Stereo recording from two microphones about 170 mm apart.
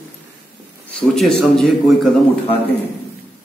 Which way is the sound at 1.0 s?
Centre (ahead or behind).